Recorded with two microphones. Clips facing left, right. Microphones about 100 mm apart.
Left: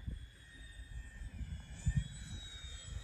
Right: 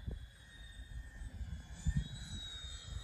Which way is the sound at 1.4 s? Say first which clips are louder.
Left 1 dB; 15° right (ahead or behind).